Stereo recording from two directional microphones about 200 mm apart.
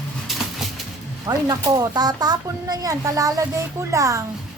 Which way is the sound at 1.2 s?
20° right (ahead or behind).